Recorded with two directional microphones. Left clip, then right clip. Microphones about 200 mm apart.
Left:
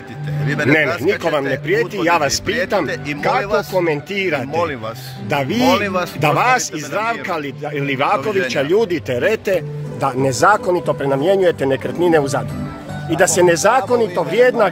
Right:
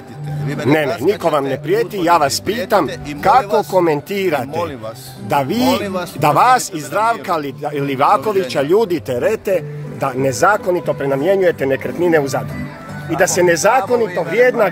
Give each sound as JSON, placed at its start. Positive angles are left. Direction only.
{"t": 0.5, "sound": "speech", "side_deg": 0}
{"t": 1.0, "sound": "a man's voice", "side_deg": -15}
{"t": 3.3, "sound": "speech", "side_deg": 0}
{"t": 3.7, "sound": "a man's voice", "side_deg": -20}
{"t": 14.1, "sound": "speech", "side_deg": 0}
{"t": 14.4, "sound": "a man's voice", "side_deg": -10}